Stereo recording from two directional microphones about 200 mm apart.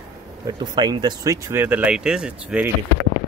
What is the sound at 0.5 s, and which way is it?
Speech, 20° right (ahead or behind).